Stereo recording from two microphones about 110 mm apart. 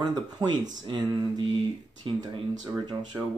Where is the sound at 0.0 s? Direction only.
40° right (ahead or behind).